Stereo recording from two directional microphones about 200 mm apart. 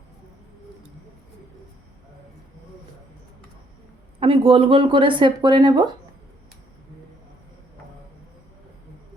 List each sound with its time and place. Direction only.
4.2 s speech: 25° right (ahead or behind)